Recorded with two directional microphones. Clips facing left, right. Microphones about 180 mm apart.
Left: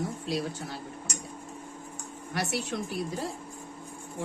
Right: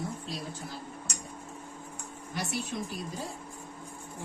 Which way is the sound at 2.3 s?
70° left (ahead or behind).